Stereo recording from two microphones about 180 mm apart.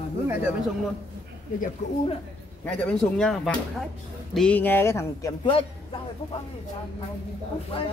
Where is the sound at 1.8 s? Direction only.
40° left (ahead or behind).